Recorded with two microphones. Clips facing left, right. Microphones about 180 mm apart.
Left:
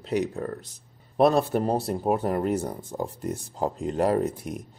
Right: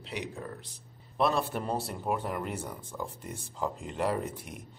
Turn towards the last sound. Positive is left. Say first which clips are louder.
# left 8 dB
turn(degrees=40)  # may be behind; listen again after turning